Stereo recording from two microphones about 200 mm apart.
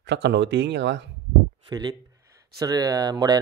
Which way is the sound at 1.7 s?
20° right (ahead or behind).